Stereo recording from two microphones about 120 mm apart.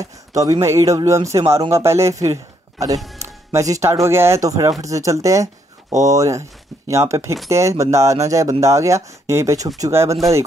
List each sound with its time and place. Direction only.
0.0 s speech: 30° right (ahead or behind)